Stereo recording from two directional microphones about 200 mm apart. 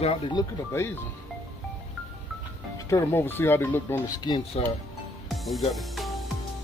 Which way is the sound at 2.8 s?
15° left (ahead or behind).